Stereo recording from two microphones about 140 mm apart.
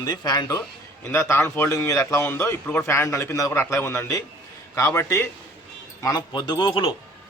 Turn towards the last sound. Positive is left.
turn(degrees=35)  # may be behind; listen again after turning